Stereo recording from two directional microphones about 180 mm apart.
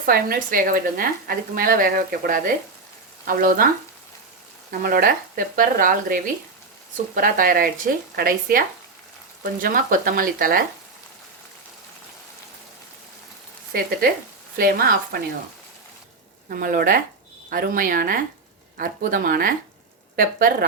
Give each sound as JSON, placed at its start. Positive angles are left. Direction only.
{"t": 0.0, "sound": "a woman's voice", "side_deg": -55}
{"t": 4.7, "sound": "a woman's voice", "side_deg": -50}
{"t": 14.5, "sound": "speech", "side_deg": -55}
{"t": 16.5, "sound": "a woman's voice", "side_deg": -50}